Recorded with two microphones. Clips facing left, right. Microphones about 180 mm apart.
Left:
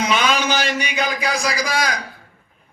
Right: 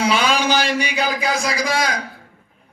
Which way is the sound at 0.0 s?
30° right (ahead or behind).